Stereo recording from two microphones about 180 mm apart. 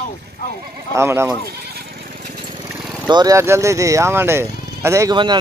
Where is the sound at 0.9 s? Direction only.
15° right (ahead or behind).